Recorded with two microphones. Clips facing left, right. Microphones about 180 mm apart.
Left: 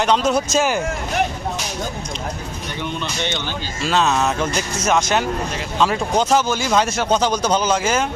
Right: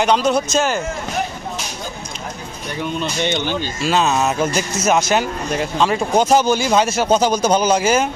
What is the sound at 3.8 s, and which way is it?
Speech, 5° right (ahead or behind).